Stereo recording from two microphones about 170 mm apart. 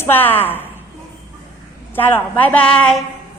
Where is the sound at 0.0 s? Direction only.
10° left (ahead or behind).